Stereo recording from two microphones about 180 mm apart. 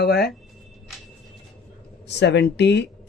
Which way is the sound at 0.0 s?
65° left (ahead or behind).